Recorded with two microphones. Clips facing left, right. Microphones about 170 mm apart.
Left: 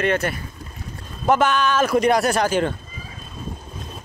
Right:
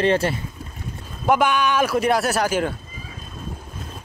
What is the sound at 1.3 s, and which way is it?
A man's voice, 10° right (ahead or behind).